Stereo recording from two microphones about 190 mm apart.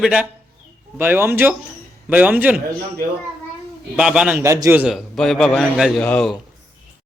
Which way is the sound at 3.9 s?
5° right (ahead or behind).